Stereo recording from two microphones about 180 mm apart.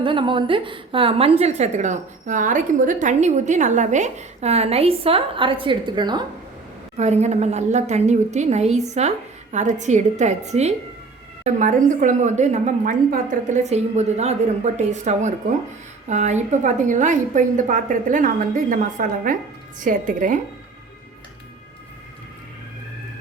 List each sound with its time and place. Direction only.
0.0 s a woman's voice: 25° right (ahead or behind)
6.9 s a woman's voice: 40° right (ahead or behind)